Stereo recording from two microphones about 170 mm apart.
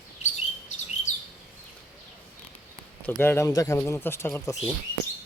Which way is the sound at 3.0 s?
10° left (ahead or behind).